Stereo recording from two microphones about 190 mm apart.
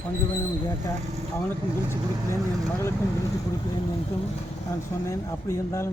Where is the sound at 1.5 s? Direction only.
15° left (ahead or behind).